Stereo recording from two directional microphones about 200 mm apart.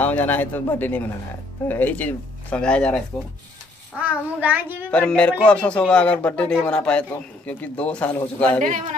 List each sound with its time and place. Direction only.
0.0 s speech: 10° left (ahead or behind)
4.0 s a child's voice: 5° right (ahead or behind)
4.9 s a man's voice: 5° left (ahead or behind)